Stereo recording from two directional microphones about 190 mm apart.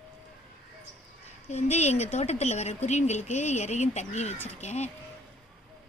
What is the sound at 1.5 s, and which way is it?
Speech, 35° left (ahead or behind).